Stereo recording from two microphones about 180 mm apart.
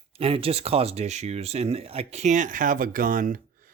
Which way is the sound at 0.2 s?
30° right (ahead or behind).